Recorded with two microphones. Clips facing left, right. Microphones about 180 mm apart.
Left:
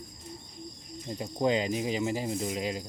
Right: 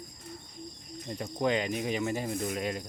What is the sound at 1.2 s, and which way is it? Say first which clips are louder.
Speech: left 2 dB; 25° left (ahead or behind).